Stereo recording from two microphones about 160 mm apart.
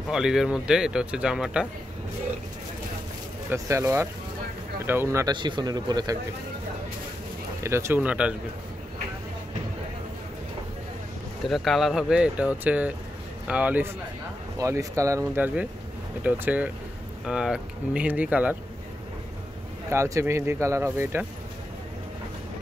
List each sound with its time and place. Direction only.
0.1 s speech: 5° right (ahead or behind)
3.4 s speech: 20° right (ahead or behind)
7.6 s speech: 15° right (ahead or behind)
11.4 s speech: centre (ahead or behind)
14.6 s speech: 20° right (ahead or behind)
19.9 s speech: 15° right (ahead or behind)